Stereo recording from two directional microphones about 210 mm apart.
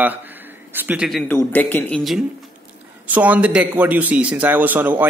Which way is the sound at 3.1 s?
10° right (ahead or behind).